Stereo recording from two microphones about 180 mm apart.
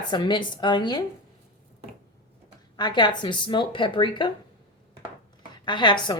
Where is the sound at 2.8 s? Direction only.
25° left (ahead or behind).